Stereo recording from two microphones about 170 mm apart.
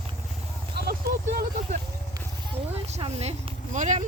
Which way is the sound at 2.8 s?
40° right (ahead or behind).